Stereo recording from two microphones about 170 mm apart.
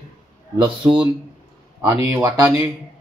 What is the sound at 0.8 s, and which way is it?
Speech, 15° right (ahead or behind).